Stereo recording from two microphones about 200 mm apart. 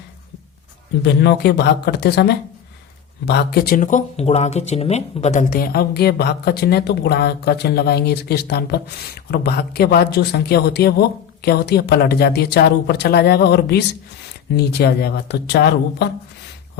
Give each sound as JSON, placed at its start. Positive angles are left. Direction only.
{"t": 1.0, "sound": "speech", "side_deg": 60}